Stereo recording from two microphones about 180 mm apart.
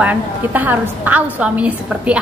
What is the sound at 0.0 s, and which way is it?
A woman's voice, 10° right (ahead or behind).